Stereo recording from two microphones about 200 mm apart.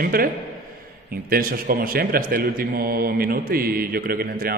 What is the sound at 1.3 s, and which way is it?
A man's voice, 45° right (ahead or behind).